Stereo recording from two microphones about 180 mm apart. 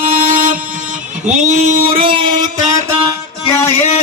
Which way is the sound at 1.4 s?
40° right (ahead or behind).